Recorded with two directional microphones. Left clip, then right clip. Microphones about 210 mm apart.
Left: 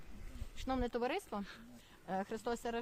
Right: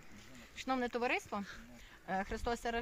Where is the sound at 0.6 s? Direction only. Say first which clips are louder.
Right 2 dB; 5° left (ahead or behind).